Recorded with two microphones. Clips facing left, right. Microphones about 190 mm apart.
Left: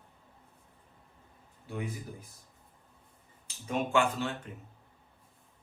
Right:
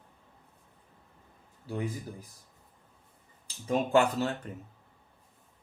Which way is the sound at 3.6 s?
40° right (ahead or behind).